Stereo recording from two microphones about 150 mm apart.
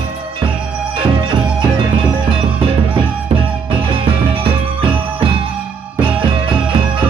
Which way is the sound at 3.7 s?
35° right (ahead or behind).